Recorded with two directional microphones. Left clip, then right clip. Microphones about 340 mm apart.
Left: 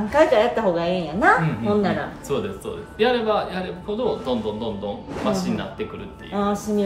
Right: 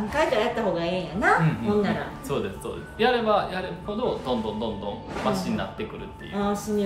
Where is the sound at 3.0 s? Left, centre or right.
Centre.